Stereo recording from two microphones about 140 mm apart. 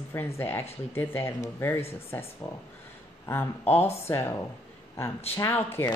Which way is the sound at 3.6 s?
50° left (ahead or behind).